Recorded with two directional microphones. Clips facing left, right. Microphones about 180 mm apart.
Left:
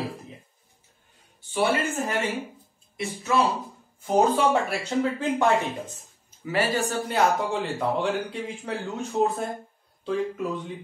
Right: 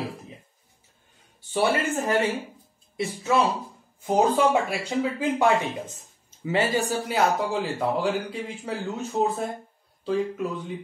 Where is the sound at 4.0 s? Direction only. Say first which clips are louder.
Even; 15° right (ahead or behind).